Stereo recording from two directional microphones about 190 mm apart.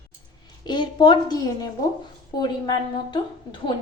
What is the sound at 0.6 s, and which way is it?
A woman's voice, 25° left (ahead or behind).